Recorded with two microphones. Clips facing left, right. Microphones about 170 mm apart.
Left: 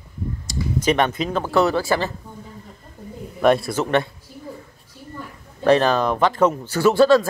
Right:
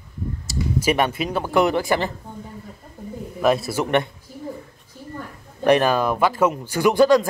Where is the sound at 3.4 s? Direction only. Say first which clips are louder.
Left 2 dB; centre (ahead or behind).